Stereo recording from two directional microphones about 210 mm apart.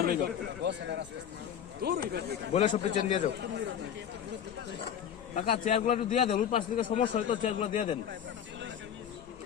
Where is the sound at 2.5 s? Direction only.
35° left (ahead or behind).